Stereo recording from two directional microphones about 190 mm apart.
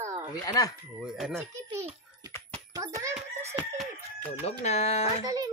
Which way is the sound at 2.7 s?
15° right (ahead or behind).